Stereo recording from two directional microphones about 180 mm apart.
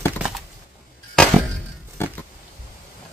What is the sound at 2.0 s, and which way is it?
Pig, 15° left (ahead or behind).